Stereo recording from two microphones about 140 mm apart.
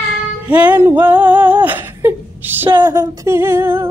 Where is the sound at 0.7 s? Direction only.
15° right (ahead or behind).